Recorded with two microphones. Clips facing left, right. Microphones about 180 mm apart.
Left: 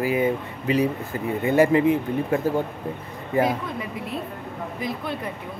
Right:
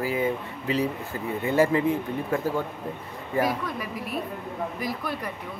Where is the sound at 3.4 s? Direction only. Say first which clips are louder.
Left 3 dB; 25° left (ahead or behind).